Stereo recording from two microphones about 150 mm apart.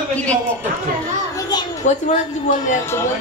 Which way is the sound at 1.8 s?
55° left (ahead or behind).